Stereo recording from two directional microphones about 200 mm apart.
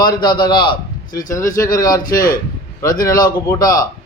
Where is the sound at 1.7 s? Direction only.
20° left (ahead or behind).